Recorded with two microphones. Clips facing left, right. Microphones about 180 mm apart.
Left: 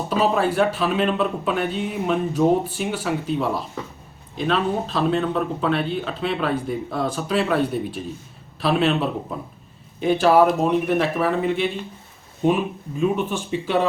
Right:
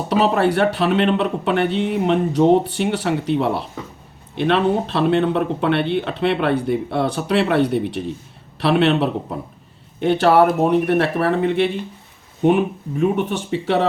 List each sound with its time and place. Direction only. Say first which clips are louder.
0.1 s speech: right 4 dB; 70° right (ahead or behind)